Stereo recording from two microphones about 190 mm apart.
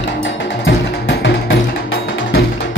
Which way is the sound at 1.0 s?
65° left (ahead or behind).